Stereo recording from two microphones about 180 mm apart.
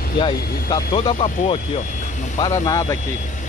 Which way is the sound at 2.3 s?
20° left (ahead or behind).